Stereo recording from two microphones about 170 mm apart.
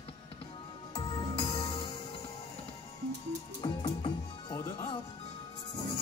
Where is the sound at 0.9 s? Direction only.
30° left (ahead or behind).